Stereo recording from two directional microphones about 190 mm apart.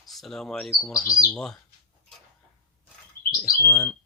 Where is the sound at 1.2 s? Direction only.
Centre (ahead or behind).